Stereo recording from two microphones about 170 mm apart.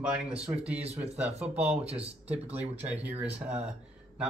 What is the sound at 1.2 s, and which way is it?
Speech, 40° right (ahead or behind).